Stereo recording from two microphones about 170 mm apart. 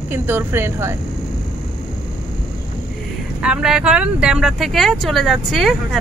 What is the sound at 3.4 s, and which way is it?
Speech, 5° right (ahead or behind).